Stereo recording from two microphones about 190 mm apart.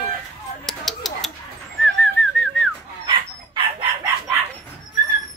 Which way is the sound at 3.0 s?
25° right (ahead or behind).